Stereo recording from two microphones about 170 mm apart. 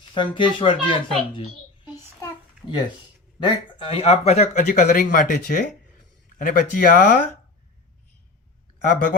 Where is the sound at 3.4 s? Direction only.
30° left (ahead or behind); by 5.7 s 50° left (ahead or behind).